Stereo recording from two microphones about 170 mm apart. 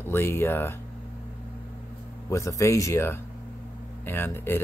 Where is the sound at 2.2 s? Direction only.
20° left (ahead or behind).